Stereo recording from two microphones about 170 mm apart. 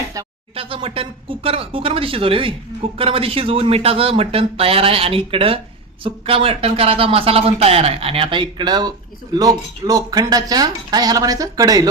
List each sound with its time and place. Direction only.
0.5 s speech: 35° right (ahead or behind)